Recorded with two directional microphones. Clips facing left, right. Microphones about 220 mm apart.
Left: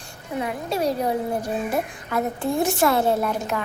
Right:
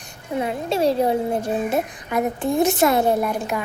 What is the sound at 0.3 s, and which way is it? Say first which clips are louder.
A woman's voice: right 3 dB; 25° right (ahead or behind).